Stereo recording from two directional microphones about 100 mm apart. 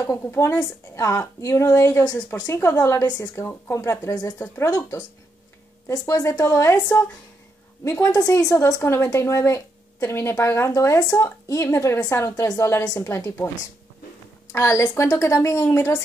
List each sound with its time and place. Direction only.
0.2 s a woman's voice: 25° left (ahead or behind)
14.5 s a woman's voice: 30° left (ahead or behind)